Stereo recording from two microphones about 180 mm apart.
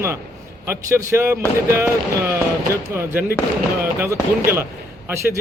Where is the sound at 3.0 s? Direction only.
10° right (ahead or behind).